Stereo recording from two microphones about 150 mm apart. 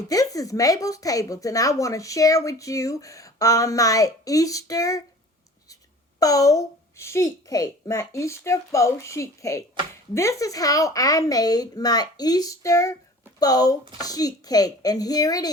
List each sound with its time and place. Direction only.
0.1 s speech: 25° left (ahead or behind)
6.1 s speech: 25° left (ahead or behind)